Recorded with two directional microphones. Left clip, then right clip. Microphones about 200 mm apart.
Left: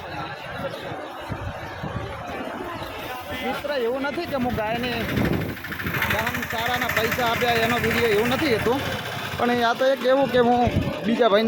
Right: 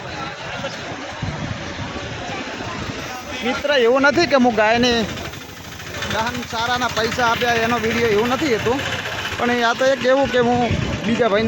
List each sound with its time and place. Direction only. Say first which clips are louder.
3.7 s speech: right 12 dB; 40° right (ahead or behind)
6.6 s speech: right 4 dB; 15° right (ahead or behind); by 11.4 s centre (ahead or behind)